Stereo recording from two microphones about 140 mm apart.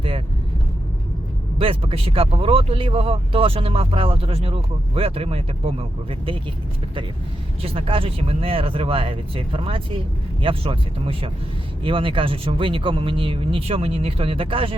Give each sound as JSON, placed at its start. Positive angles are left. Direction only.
{"t": 1.5, "sound": "speech", "side_deg": -40}
{"t": 7.6, "sound": "speech", "side_deg": -40}